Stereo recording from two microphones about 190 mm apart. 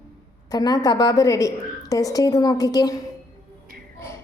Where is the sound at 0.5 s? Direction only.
20° left (ahead or behind).